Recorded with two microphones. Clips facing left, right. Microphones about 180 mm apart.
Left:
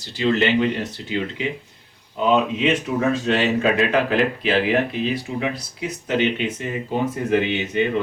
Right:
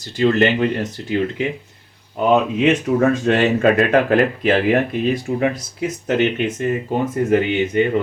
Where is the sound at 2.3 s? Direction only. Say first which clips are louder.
Right 3 dB; 50° right (ahead or behind).